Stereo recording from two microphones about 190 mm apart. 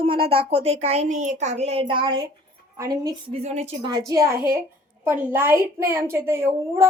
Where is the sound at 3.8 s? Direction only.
20° right (ahead or behind).